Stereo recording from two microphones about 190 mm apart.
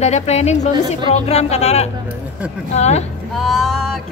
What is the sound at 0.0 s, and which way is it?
A woman's voice, 35° left (ahead or behind).